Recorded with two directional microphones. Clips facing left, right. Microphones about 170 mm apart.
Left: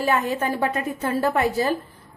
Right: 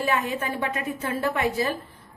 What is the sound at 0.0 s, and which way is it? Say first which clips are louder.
A woman's voice: left 3 dB; 40° left (ahead or behind).